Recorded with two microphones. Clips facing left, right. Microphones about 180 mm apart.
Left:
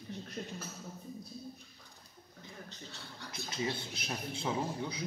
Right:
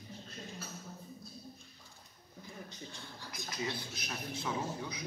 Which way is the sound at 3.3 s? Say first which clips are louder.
Left 3 dB; 25° left (ahead or behind).